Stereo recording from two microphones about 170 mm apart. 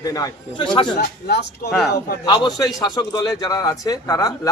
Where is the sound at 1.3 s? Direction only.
75° left (ahead or behind).